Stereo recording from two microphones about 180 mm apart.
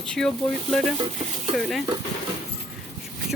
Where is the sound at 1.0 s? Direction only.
30° right (ahead or behind).